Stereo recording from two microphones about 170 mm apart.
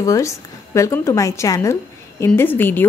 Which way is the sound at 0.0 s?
20° left (ahead or behind).